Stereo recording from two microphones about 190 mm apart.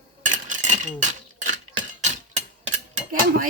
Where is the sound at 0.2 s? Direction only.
45° right (ahead or behind).